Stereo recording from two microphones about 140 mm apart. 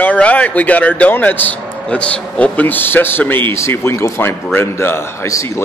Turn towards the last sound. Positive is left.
turn(degrees=20)  # may be behind; listen again after turning